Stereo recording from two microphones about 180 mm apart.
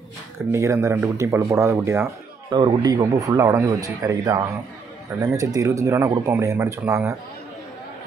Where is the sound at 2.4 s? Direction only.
25° right (ahead or behind).